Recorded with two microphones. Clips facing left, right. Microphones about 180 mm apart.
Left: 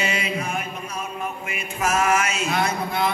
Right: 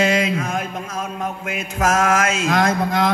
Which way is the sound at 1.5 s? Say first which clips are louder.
Right 5 dB; 90° right.